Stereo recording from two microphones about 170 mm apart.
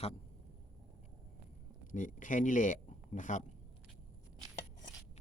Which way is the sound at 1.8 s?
50° left (ahead or behind).